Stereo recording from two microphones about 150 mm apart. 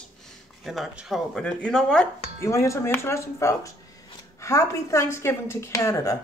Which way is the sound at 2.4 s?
20° left (ahead or behind).